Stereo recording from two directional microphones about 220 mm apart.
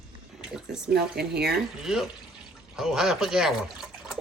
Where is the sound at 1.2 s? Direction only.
45° right (ahead or behind).